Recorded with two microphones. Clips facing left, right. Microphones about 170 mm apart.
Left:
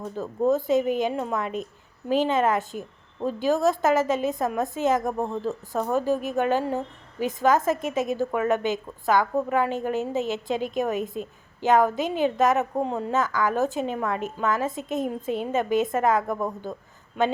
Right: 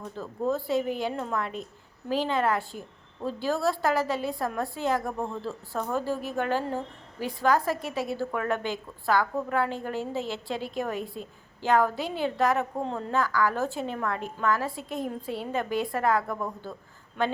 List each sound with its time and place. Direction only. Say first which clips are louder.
0.0 s a woman's voice: left 6 dB; 20° left (ahead or behind)